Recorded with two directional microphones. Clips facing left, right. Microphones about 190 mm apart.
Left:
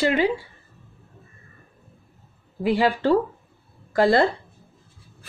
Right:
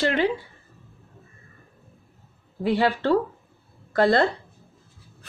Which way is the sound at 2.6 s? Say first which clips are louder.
Left 1 dB; 10° left (ahead or behind).